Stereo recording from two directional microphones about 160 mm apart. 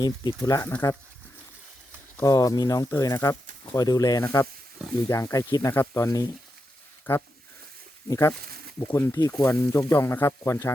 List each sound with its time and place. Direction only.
0.0 s speech: 25° left (ahead or behind)
2.2 s speech: 20° left (ahead or behind)